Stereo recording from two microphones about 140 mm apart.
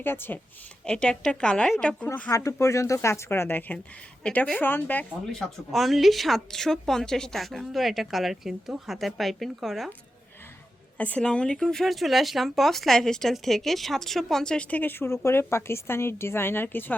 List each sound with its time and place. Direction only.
0.0 s speech: 15° left (ahead or behind)
2.3 s a woman's voice: 20° left (ahead or behind)
5.2 s speech: centre (ahead or behind)
10.9 s speech: 10° left (ahead or behind)